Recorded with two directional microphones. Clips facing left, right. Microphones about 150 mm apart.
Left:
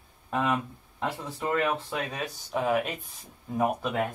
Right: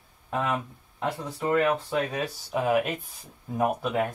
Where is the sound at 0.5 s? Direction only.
10° right (ahead or behind).